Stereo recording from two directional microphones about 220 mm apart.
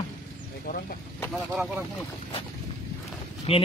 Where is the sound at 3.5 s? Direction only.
25° left (ahead or behind).